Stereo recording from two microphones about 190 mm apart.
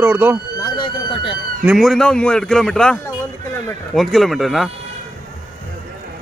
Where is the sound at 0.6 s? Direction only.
25° left (ahead or behind).